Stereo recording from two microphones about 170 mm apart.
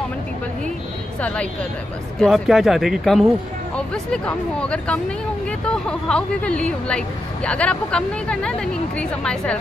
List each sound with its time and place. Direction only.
1.2 s speech: 5° left (ahead or behind)